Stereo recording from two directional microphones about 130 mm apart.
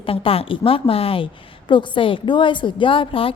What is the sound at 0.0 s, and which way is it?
A woman's voice, 45° left (ahead or behind).